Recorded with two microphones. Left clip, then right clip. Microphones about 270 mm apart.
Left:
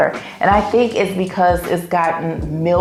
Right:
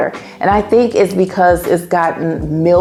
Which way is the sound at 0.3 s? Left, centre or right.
Right.